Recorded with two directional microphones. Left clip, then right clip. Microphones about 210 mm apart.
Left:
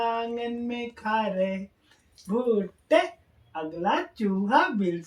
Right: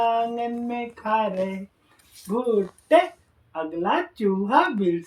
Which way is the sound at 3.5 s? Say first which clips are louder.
Right 3 dB; 20° left (ahead or behind).